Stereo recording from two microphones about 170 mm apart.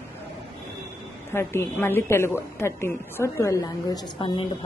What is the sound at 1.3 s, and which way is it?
A woman's voice, 15° left (ahead or behind).